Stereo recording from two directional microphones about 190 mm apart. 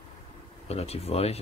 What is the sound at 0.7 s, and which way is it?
Speech, 35° left (ahead or behind).